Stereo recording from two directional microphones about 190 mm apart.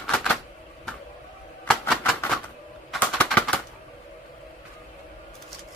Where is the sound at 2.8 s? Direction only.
5° left (ahead or behind).